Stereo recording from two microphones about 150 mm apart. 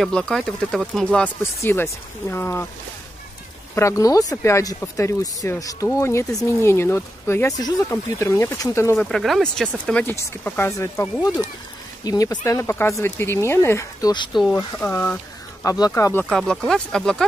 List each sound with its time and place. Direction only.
0.0 s speech: 5° left (ahead or behind)
3.7 s speech: 20° left (ahead or behind)
9.0 s speech: centre (ahead or behind); by 14.1 s 20° left (ahead or behind)
14.3 s speech: 30° left (ahead or behind)
14.8 s speech: 15° left (ahead or behind)
16.3 s speech: centre (ahead or behind)